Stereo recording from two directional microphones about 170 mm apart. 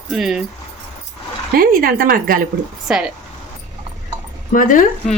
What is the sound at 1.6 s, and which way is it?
Speech, 60° right (ahead or behind).